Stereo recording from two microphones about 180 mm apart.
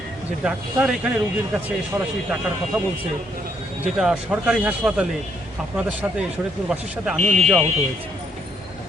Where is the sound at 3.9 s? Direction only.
5° right (ahead or behind).